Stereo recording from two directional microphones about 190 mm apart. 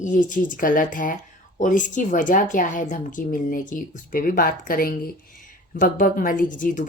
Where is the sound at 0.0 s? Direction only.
40° left (ahead or behind).